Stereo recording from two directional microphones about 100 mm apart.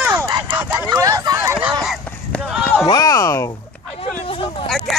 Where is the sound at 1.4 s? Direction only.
15° right (ahead or behind).